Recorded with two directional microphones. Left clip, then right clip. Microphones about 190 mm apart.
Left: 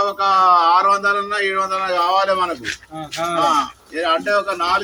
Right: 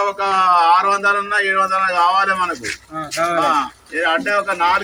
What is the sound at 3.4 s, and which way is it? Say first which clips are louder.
Speech: even; 15° right (ahead or behind).